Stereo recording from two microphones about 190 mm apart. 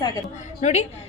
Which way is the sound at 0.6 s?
35° left (ahead or behind).